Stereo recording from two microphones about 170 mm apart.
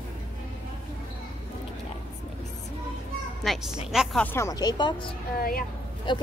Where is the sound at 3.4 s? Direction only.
Centre (ahead or behind).